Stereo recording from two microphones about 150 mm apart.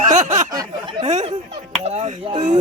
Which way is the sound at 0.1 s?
50° right (ahead or behind).